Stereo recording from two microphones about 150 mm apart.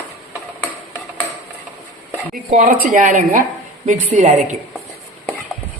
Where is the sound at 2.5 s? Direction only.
65° right (ahead or behind).